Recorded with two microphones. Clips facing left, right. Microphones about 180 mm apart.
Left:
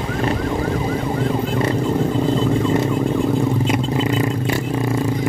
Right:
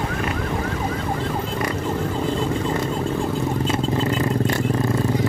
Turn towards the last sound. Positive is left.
turn(degrees=15)  # may be behind; listen again after turning